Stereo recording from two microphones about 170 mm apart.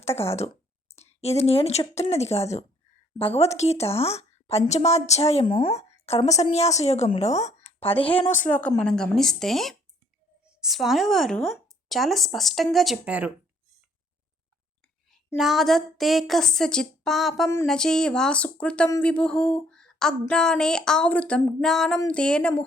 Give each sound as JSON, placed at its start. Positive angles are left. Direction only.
{"t": 0.2, "sound": "a woman's voice", "side_deg": 35}
{"t": 8.8, "sound": "speech", "side_deg": 5}
{"t": 15.4, "sound": "speech", "side_deg": 0}